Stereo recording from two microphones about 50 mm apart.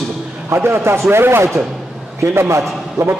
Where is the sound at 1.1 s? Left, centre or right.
Right.